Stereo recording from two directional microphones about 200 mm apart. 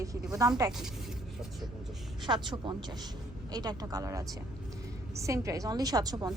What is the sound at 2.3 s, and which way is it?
A woman's voice, 20° right (ahead or behind).